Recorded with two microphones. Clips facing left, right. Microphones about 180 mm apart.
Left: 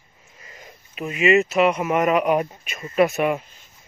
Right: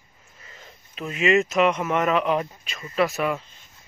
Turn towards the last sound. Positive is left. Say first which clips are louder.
# left 4 dB
turn(degrees=15)  # may be behind; listen again after turning